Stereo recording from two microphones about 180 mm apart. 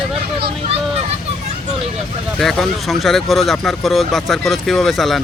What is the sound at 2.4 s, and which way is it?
Speech, centre (ahead or behind).